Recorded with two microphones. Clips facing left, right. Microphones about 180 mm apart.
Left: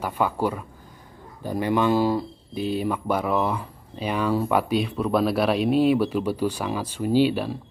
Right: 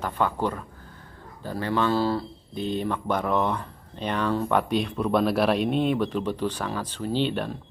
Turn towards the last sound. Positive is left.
turn(degrees=5)  # may be behind; listen again after turning